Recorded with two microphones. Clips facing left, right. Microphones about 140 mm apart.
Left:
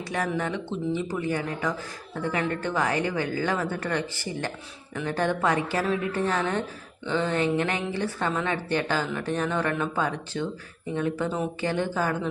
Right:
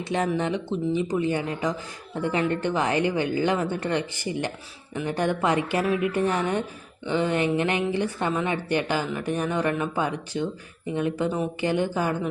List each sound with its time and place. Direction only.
0.0 s a woman's voice: 25° right (ahead or behind)